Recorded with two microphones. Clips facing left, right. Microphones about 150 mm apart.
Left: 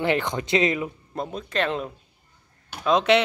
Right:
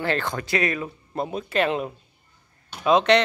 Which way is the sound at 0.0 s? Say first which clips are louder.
Left 2 dB; 15° left (ahead or behind).